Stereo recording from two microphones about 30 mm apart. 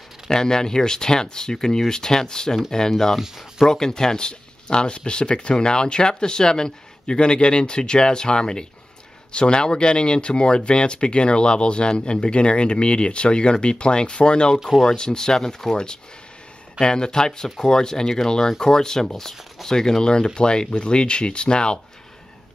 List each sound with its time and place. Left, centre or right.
0.3 s speech: left
14.9 s speech: left